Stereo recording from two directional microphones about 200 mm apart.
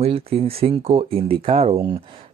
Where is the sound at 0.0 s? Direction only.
30° right (ahead or behind).